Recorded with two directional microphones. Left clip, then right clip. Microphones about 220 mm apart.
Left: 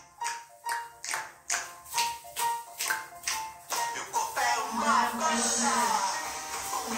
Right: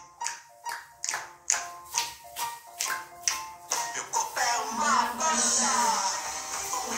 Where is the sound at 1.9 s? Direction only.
40° right (ahead or behind).